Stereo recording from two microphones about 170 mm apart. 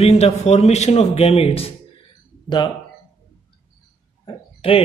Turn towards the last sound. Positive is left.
turn(degrees=30)  # may be behind; listen again after turning